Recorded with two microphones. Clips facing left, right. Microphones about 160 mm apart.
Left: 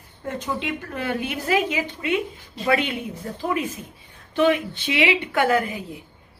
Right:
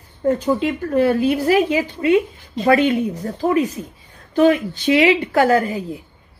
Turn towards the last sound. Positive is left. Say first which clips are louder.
# right 5 dB
turn(degrees=-35)  # may be behind; listen again after turning